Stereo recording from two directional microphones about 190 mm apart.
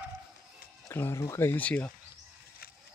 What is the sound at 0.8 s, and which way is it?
Speech, 15° left (ahead or behind).